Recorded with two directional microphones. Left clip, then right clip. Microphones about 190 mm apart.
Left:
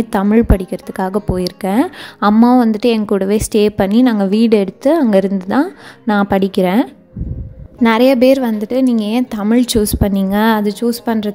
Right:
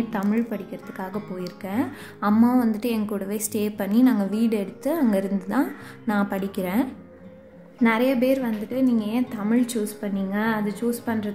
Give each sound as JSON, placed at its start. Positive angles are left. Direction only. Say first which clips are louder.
{"t": 0.1, "sound": "a woman's voice", "louder": "left 13 dB", "side_deg": 45}